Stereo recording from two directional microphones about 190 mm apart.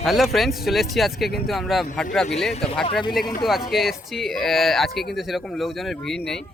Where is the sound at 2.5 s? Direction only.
30° left (ahead or behind).